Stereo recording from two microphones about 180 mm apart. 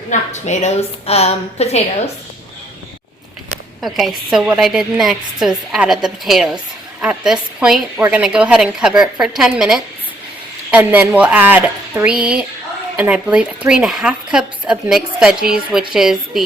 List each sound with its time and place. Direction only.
0.1 s a woman's voice: 40° left (ahead or behind)
3.8 s a woman's voice: centre (ahead or behind)